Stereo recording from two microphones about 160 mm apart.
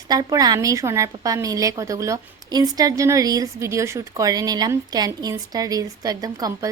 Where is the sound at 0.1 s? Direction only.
20° right (ahead or behind).